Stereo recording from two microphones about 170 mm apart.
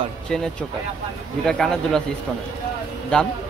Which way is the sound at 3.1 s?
5° left (ahead or behind).